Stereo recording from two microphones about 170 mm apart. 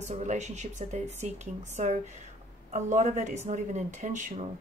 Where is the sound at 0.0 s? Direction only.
45° right (ahead or behind).